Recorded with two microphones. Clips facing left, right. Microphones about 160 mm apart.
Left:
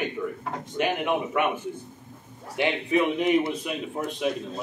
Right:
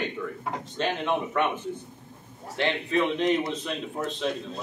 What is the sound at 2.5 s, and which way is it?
A man's voice, 10° left (ahead or behind).